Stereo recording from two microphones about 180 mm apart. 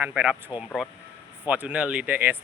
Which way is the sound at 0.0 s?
10° right (ahead or behind).